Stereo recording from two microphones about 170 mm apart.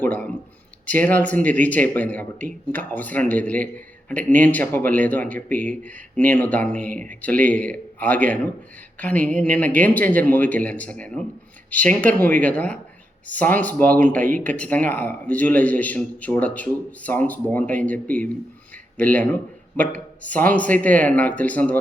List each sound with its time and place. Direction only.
0.0 s speech: 10° left (ahead or behind)